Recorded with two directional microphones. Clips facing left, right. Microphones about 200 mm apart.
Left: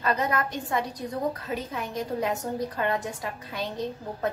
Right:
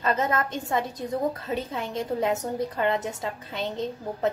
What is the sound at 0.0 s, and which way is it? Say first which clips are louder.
A woman's voice: right 1 dB; 25° right (ahead or behind).